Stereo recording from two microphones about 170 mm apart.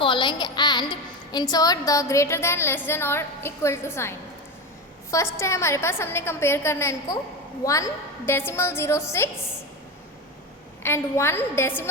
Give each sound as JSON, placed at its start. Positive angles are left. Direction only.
{"t": 0.0, "sound": "a woman's voice", "side_deg": 30}
{"t": 5.1, "sound": "a woman's voice", "side_deg": 15}
{"t": 10.8, "sound": "a woman's voice", "side_deg": 15}